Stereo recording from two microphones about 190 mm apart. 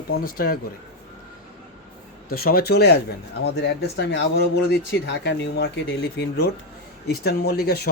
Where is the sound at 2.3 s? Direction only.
50° left (ahead or behind).